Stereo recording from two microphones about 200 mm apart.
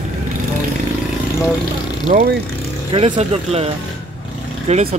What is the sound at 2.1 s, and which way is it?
Speech, 50° right (ahead or behind).